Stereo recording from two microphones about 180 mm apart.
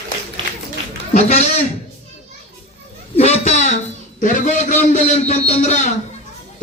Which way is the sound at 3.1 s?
35° left (ahead or behind).